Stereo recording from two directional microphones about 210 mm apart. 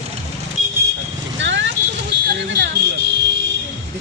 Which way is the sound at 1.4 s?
60° right (ahead or behind).